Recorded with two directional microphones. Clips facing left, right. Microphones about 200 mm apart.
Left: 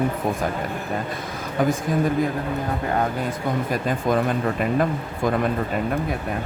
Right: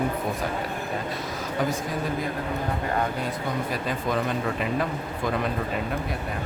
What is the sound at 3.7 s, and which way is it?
Speech, 50° left (ahead or behind).